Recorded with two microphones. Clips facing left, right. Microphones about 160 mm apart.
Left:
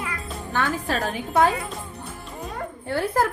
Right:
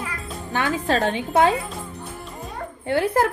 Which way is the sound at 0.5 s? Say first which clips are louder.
Right 3 dB; 20° right (ahead or behind).